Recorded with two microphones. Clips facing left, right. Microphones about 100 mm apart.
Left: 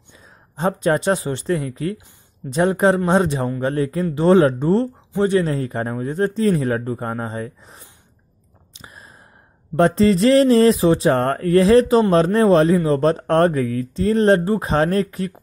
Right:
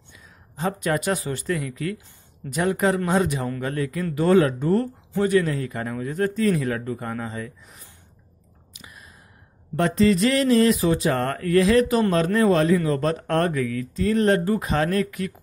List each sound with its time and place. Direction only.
0.1 s speech: 30° left (ahead or behind)
8.7 s a sound: 35° left (ahead or behind)
9.8 s speech: 35° left (ahead or behind)